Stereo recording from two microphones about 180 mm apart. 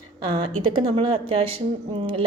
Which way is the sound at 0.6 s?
30° right (ahead or behind).